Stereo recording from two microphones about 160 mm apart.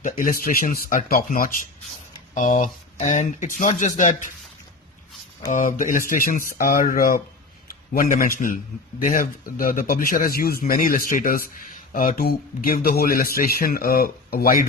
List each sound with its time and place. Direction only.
0.0 s speech: 60° left (ahead or behind)
2.3 s speech: 50° left (ahead or behind)
5.5 s a man's voice: 55° left (ahead or behind)